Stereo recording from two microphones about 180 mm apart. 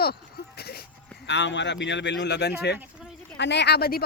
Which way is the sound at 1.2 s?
80° left.